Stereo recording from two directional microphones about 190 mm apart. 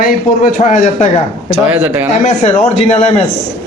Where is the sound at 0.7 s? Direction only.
40° left (ahead or behind).